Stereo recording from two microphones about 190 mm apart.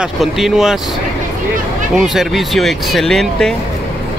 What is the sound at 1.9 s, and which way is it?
Speech, centre (ahead or behind).